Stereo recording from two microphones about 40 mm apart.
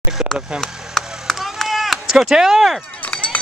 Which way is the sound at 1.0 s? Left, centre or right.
Centre.